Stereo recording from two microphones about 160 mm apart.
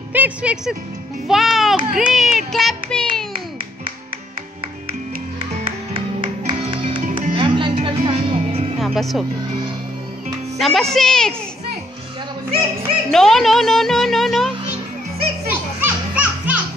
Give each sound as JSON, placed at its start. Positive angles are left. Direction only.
{"t": 0.1, "sound": "a child's voice", "side_deg": -10}
{"t": 5.9, "sound": "music", "side_deg": -35}
{"t": 7.1, "sound": "music", "side_deg": -50}
{"t": 7.3, "sound": "music", "side_deg": -30}
{"t": 8.7, "sound": "music", "side_deg": 0}
{"t": 10.6, "sound": "a child's voice", "side_deg": 0}
{"t": 12.4, "sound": "music", "side_deg": -40}
{"t": 13.1, "sound": "speech", "side_deg": 0}
{"t": 15.8, "sound": "music", "side_deg": -10}